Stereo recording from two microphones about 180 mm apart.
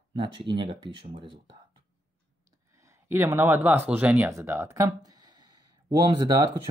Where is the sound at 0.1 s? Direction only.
30° right (ahead or behind).